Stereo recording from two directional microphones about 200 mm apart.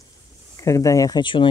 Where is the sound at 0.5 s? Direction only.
15° left (ahead or behind).